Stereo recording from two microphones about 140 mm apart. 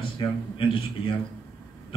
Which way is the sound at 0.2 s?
40° left (ahead or behind).